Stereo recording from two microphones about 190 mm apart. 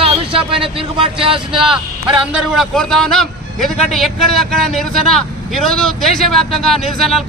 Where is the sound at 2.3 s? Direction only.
Centre (ahead or behind).